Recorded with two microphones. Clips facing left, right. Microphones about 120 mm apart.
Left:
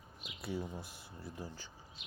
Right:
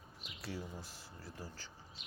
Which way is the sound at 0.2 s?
15° left (ahead or behind).